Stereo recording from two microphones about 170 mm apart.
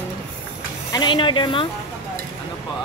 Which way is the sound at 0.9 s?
30° left (ahead or behind).